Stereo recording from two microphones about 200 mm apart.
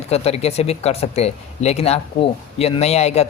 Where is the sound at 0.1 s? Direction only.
30° left (ahead or behind).